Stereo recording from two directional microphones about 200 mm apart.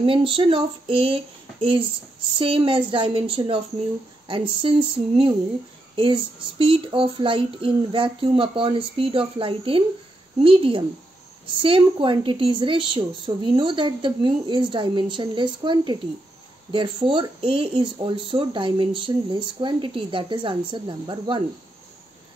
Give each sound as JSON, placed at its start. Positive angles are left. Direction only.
{"t": 0.0, "sound": "speech", "side_deg": -25}